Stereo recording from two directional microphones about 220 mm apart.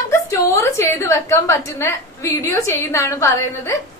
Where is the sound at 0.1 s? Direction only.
10° left (ahead or behind).